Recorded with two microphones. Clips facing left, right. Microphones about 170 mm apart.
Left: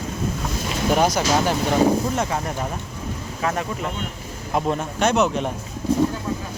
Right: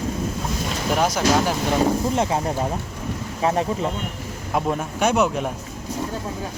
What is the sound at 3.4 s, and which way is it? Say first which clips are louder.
Speech: right 4 dB; 30° right (ahead or behind).